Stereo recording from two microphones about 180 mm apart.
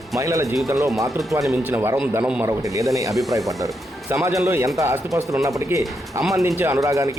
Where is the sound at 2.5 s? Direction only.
20° right (ahead or behind).